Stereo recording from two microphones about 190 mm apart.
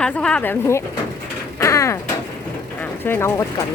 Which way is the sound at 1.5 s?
15° left (ahead or behind).